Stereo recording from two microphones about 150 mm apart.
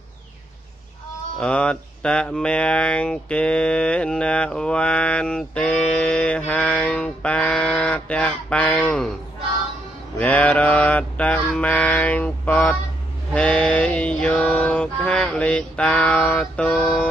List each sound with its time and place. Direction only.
1.4 s speech: 5° left (ahead or behind)
10.1 s speech: 10° left (ahead or behind)
13.3 s a sound: 5° left (ahead or behind)